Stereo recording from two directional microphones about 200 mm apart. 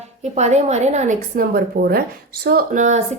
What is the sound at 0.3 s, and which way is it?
A woman's voice, 35° right (ahead or behind).